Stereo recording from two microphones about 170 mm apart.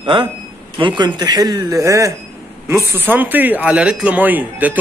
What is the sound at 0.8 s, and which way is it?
A man's voice, 25° right (ahead or behind).